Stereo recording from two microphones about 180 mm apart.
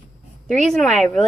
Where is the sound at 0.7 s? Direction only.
Centre (ahead or behind).